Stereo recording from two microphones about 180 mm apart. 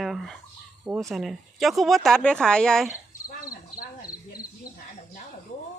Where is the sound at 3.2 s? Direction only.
50° left (ahead or behind).